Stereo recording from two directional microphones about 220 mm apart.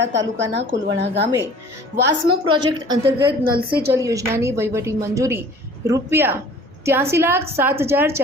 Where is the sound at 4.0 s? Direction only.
15° right (ahead or behind).